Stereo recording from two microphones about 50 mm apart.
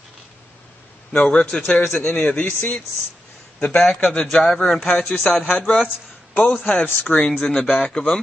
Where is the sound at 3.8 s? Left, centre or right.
Centre.